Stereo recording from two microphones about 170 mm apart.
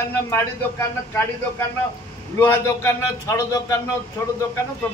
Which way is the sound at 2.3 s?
15° left (ahead or behind).